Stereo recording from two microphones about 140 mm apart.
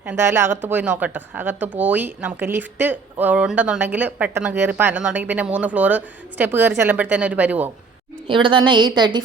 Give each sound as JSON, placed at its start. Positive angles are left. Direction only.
{"t": 0.0, "sound": "a woman's voice", "side_deg": -15}
{"t": 8.3, "sound": "a woman's voice", "side_deg": -35}